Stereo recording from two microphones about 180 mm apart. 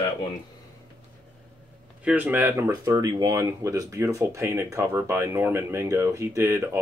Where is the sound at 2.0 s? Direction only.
10° right (ahead or behind).